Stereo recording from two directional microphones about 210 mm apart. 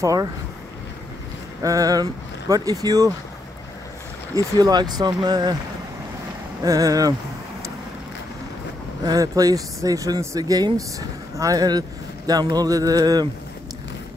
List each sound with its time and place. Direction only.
0.0 s speech: 15° right (ahead or behind)
1.6 s speech: 15° right (ahead or behind)
4.6 s speech: 20° right (ahead or behind)
6.6 s speech: 15° right (ahead or behind)
9.0 s speech: 15° right (ahead or behind)